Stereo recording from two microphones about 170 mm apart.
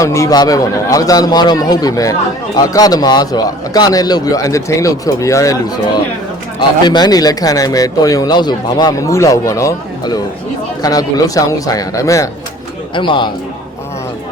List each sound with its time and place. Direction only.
0.0 s speech: 20° left (ahead or behind)